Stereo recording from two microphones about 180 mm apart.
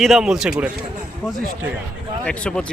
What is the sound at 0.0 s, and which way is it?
Speech, centre (ahead or behind).